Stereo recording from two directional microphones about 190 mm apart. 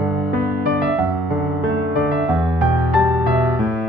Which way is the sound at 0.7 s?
Centre (ahead or behind).